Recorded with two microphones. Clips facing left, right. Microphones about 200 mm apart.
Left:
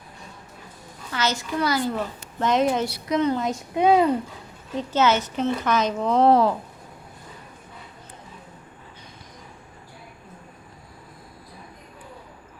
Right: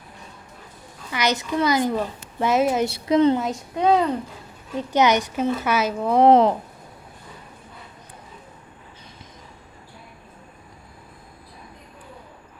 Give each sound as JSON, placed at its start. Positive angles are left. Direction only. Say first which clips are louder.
{"t": 1.1, "sound": "speech", "louder": "right 3 dB", "side_deg": -15}
{"t": 2.8, "sound": "a woman's voice", "louder": "right 5 dB", "side_deg": -25}
{"t": 3.8, "sound": "speech", "louder": "left 1 dB", "side_deg": 10}
{"t": 4.8, "sound": "speech", "louder": "right 2 dB", "side_deg": -15}